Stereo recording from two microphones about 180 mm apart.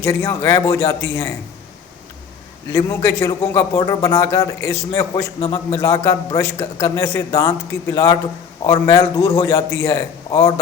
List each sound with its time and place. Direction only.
0.0 s a man's voice: 15° left (ahead or behind)
2.7 s a man's voice: 15° left (ahead or behind)